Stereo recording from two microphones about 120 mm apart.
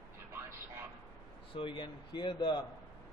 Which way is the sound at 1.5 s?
45° left (ahead or behind).